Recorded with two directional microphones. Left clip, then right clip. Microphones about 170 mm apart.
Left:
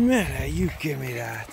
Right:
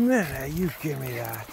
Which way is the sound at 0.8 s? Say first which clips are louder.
Left 2 dB; 15° left (ahead or behind).